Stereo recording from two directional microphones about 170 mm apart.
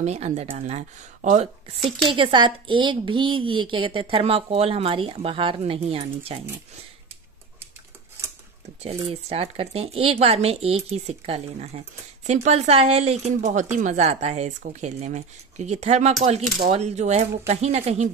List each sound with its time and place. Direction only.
0.0 s speech: 40° right (ahead or behind)
8.8 s speech: 35° right (ahead or behind)